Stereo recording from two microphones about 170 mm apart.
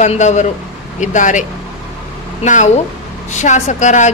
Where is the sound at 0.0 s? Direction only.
45° left (ahead or behind).